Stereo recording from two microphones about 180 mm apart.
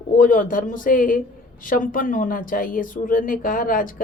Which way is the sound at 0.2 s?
50° left (ahead or behind).